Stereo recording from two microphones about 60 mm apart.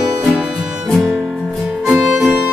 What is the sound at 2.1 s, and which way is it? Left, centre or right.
Music, right.